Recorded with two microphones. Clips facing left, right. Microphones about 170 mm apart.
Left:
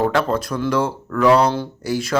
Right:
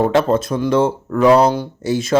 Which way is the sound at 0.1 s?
20° right (ahead or behind).